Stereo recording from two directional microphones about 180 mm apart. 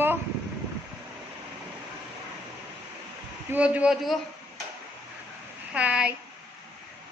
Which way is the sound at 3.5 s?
5° right (ahead or behind).